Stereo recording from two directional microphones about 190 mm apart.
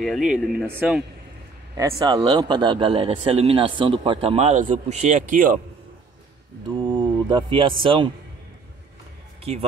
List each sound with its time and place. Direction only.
0.0 s speech: 5° right (ahead or behind)
1.8 s speech: 20° right (ahead or behind); by 5.6 s 45° right (ahead or behind)
6.9 s speech: 25° right (ahead or behind)
9.4 s speech: 35° right (ahead or behind)